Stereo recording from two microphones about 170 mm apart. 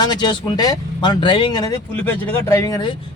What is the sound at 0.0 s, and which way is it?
Speech, 25° left (ahead or behind).